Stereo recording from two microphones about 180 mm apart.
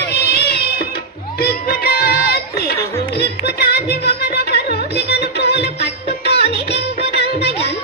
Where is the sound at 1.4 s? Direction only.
60° left (ahead or behind).